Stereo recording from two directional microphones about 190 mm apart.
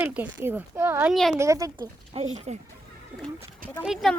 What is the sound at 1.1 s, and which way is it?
Speech, centre (ahead or behind).